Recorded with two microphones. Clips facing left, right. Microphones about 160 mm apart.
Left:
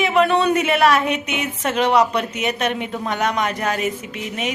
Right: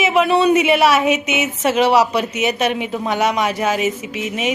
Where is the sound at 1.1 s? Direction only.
90° right.